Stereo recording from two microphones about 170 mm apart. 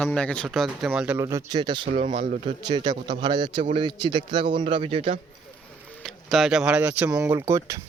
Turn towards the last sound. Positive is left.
turn(degrees=-15)  # may be behind; listen again after turning